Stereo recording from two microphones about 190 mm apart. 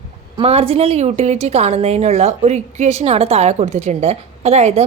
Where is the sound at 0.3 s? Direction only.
30° right (ahead or behind).